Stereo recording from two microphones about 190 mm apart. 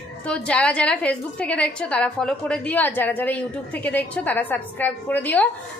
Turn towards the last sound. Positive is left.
turn(degrees=10)  # may be behind; listen again after turning